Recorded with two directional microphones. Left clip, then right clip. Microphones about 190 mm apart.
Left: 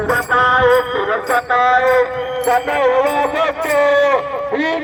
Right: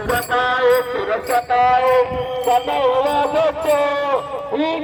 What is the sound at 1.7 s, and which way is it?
Speech, 30° right (ahead or behind).